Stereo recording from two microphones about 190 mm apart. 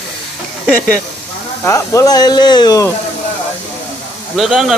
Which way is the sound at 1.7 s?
15° left (ahead or behind).